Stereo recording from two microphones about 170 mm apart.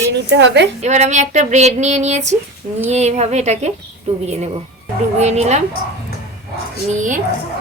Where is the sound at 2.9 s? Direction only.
40° right (ahead or behind).